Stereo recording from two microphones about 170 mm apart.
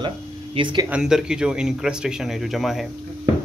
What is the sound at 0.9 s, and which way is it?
Speech, 5° right (ahead or behind).